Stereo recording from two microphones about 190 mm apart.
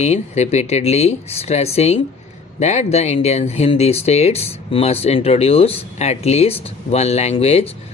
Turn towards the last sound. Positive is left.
turn(degrees=35)  # may be behind; listen again after turning